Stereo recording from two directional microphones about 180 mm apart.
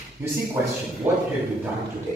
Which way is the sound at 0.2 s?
15° right (ahead or behind).